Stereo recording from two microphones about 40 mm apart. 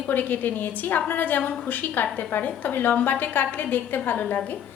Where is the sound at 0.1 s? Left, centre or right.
Left.